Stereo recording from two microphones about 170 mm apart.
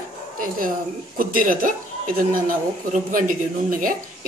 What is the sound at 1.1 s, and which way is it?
Speech, 55° right (ahead or behind).